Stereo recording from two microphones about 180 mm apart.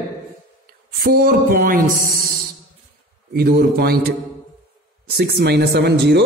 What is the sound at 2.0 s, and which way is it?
Speech, 55° right (ahead or behind).